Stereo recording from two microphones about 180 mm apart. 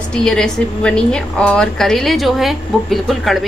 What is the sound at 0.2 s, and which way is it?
A woman's voice, 5° left (ahead or behind).